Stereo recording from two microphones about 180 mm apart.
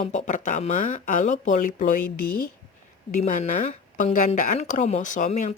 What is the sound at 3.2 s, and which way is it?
Speech, 45° left (ahead or behind).